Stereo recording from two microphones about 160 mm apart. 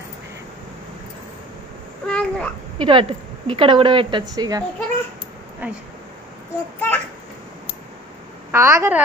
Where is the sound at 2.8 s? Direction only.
30° right (ahead or behind).